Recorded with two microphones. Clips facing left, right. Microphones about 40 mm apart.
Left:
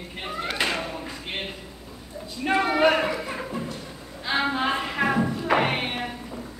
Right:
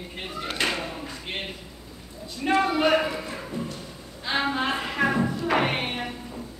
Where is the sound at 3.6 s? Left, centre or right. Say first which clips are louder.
Even; left.